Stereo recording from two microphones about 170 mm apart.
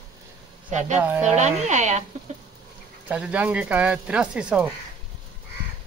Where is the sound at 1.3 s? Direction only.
40° right (ahead or behind).